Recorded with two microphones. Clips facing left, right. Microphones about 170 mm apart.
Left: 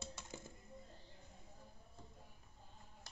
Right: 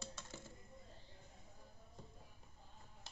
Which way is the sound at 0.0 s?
15° left (ahead or behind).